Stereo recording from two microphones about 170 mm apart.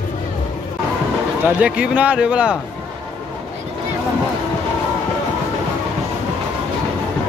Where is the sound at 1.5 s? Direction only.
5° right (ahead or behind).